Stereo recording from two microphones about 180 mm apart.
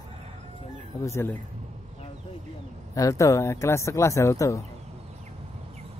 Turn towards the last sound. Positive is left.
turn(degrees=-40)  # may be behind; listen again after turning